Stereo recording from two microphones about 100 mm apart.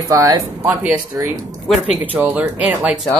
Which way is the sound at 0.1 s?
35° right (ahead or behind).